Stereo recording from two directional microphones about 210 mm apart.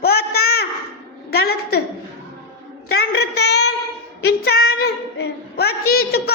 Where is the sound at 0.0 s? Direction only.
50° left (ahead or behind).